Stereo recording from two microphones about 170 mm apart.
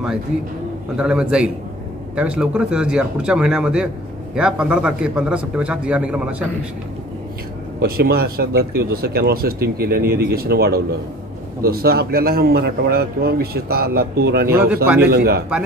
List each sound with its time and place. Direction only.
0.9 s a man's voice: 5° right (ahead or behind)
7.8 s a man's voice: 65° right (ahead or behind)